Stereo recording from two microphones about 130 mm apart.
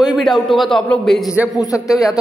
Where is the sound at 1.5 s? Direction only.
25° left (ahead or behind).